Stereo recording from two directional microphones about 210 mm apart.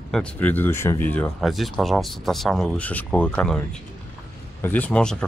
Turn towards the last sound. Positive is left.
turn(degrees=5)  # may be behind; listen again after turning